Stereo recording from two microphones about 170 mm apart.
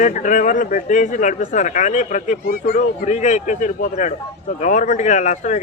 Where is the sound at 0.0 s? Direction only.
50° left (ahead or behind).